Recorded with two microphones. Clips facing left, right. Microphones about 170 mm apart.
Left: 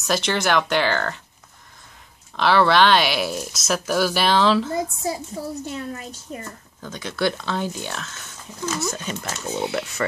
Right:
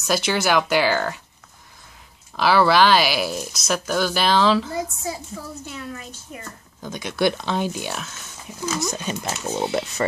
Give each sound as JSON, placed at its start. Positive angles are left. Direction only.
{"t": 0.0, "sound": "speech", "side_deg": -5}
{"t": 2.3, "sound": "speech", "side_deg": -5}
{"t": 5.0, "sound": "a child's voice", "side_deg": 35}
{"t": 6.8, "sound": "speech", "side_deg": -15}